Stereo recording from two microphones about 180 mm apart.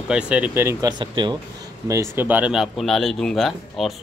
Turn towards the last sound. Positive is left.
turn(degrees=0)  # may be behind; listen again after turning